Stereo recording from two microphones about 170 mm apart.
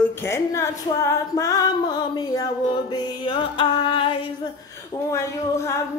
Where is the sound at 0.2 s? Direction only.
15° left (ahead or behind).